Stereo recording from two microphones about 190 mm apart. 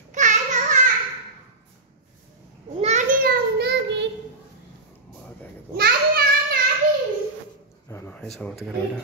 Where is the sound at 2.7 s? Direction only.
35° right (ahead or behind); by 4.0 s 65° right (ahead or behind).